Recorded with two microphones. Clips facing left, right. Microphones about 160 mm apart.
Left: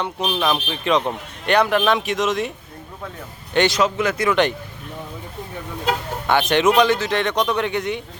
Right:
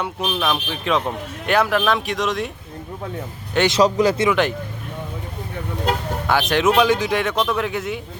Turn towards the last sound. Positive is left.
turn(degrees=-5)  # may be behind; listen again after turning